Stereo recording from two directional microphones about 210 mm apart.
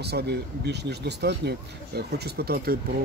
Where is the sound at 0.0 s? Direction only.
50° right (ahead or behind).